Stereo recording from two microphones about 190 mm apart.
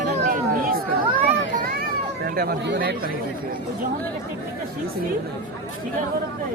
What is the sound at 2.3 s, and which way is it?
Speech, 55° right (ahead or behind).